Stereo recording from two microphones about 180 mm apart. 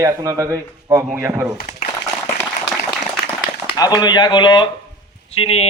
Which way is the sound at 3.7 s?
20° left (ahead or behind).